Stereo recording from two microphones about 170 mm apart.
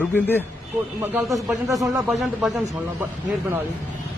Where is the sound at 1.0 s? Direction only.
Centre (ahead or behind).